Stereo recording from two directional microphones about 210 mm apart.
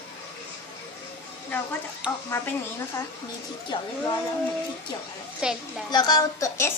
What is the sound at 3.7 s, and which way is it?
Speech, 20° left (ahead or behind).